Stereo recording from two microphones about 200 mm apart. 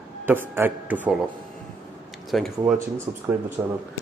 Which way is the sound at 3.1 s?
25° right (ahead or behind).